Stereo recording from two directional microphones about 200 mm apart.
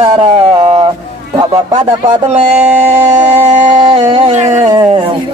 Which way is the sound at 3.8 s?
20° right (ahead or behind).